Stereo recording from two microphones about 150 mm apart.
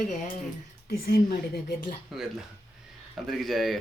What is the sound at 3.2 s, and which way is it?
Speech, centre (ahead or behind).